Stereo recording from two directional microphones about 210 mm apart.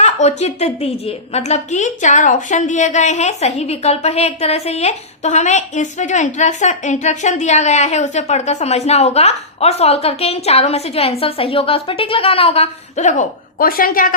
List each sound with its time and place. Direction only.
0.0 s a woman's voice: 30° left (ahead or behind)